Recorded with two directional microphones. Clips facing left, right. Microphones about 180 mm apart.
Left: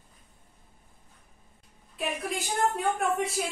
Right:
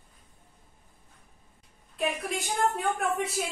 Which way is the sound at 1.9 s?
Centre (ahead or behind).